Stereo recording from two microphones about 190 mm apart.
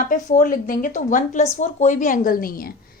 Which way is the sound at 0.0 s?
45° left (ahead or behind).